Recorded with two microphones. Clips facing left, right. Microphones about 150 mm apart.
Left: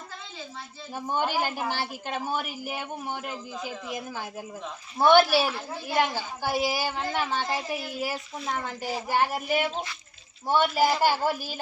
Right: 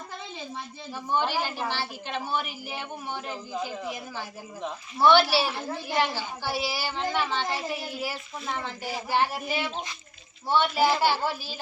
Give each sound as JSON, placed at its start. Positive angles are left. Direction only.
{"t": 0.9, "sound": "speech", "side_deg": 45}
{"t": 4.9, "sound": "speech", "side_deg": 50}